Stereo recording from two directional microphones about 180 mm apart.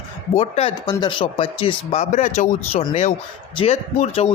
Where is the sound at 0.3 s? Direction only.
35° left (ahead or behind).